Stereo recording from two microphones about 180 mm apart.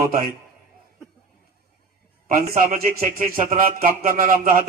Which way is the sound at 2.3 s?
50° right (ahead or behind).